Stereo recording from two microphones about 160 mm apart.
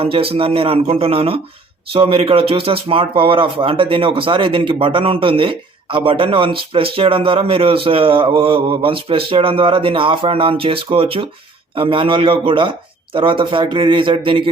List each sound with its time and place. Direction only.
0.0 s speech: 35° right (ahead or behind)